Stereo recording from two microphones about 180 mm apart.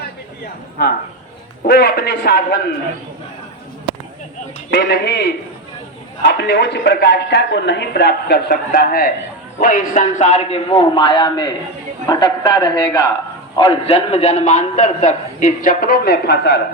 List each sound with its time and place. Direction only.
0.8 s speech: 60° left (ahead or behind)
1.6 s speech: 70° left (ahead or behind)
4.7 s a man's voice: 70° left (ahead or behind)